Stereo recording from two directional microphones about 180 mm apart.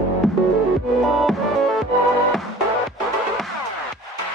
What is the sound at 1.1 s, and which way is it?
Music, centre (ahead or behind).